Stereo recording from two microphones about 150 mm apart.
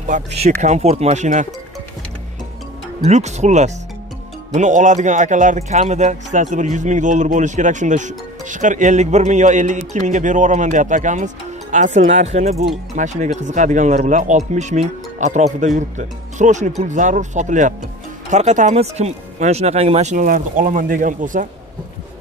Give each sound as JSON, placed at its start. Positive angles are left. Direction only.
{"t": 0.0, "sound": "speech", "side_deg": -50}
{"t": 3.0, "sound": "a man's voice", "side_deg": -50}
{"t": 20.2, "sound": "a man's voice", "side_deg": -65}